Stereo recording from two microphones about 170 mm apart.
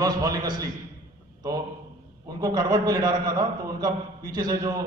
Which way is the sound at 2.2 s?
20° right (ahead or behind).